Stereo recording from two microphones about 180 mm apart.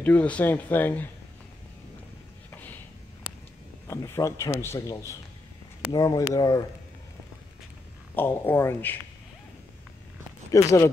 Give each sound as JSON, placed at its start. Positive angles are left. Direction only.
{"t": 0.0, "sound": "speech", "side_deg": 10}
{"t": 3.8, "sound": "speech", "side_deg": 15}
{"t": 8.2, "sound": "speech", "side_deg": 10}
{"t": 10.5, "sound": "speech", "side_deg": 20}